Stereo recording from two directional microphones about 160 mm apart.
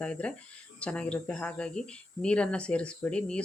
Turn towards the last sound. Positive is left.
turn(degrees=5)  # may be behind; listen again after turning